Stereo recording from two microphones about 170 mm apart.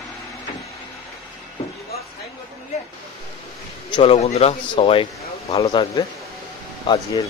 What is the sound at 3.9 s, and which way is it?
A man's voice, 35° left (ahead or behind).